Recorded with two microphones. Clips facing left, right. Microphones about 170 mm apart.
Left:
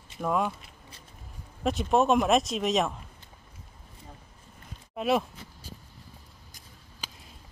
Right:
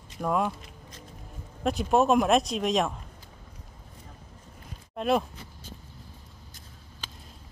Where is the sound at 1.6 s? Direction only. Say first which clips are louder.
Right 1 dB; centre (ahead or behind).